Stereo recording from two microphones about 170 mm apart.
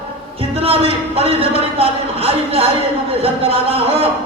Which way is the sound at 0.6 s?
35° right (ahead or behind).